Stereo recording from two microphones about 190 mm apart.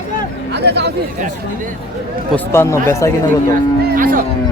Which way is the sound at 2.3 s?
15° left (ahead or behind).